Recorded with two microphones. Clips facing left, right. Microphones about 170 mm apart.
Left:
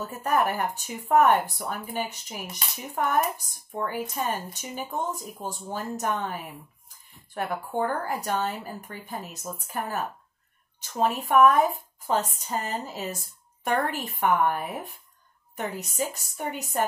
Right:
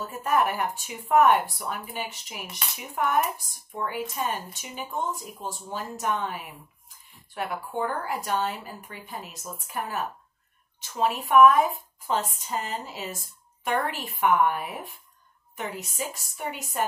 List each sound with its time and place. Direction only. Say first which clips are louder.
0.0 s a woman's voice: even; 40° left (ahead or behind)